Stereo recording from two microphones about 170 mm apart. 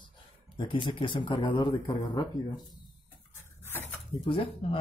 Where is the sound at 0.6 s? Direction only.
30° left (ahead or behind).